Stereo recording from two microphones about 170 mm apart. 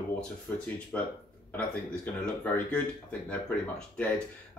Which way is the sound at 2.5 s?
10° left (ahead or behind).